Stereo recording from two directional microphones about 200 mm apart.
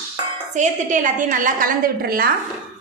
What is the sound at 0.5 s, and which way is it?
A woman's voice, 40° right (ahead or behind).